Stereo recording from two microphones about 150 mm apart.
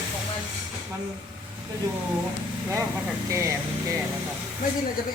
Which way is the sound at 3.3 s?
20° right (ahead or behind).